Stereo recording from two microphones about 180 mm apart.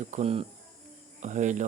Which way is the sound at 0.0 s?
40° right (ahead or behind).